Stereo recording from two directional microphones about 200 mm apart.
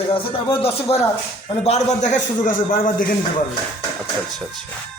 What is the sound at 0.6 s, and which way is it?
A man's voice, 30° left (ahead or behind).